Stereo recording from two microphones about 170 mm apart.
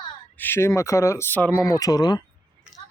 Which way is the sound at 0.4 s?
15° left (ahead or behind).